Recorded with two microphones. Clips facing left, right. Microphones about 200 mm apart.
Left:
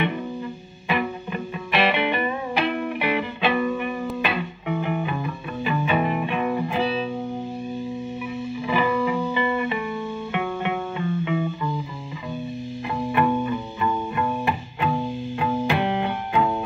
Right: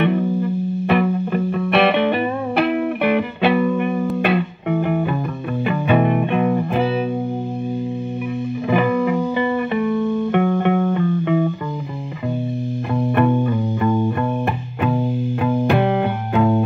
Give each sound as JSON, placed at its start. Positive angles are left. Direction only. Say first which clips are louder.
{"t": 0.0, "sound": "music", "louder": "right 8 dB", "side_deg": -60}
{"t": 8.6, "sound": "music", "louder": "right 5 dB", "side_deg": -55}
{"t": 12.9, "sound": "music", "louder": "right 5 dB", "side_deg": -55}